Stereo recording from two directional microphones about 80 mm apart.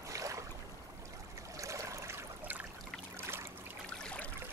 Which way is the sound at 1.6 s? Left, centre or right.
Right.